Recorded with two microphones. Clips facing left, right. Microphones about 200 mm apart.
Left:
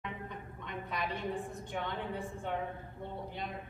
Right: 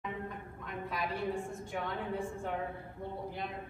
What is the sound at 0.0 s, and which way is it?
A woman's voice, 5° right (ahead or behind).